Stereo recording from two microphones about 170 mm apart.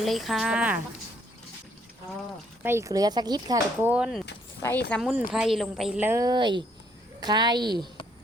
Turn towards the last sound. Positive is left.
turn(degrees=-25)  # may be behind; listen again after turning